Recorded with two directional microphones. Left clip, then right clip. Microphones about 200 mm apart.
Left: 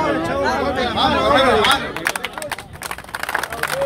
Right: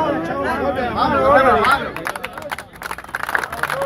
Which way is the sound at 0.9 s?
60° left (ahead or behind).